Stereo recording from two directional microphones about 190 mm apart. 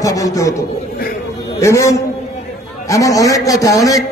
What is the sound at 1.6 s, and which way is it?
A man's voice, 15° left (ahead or behind).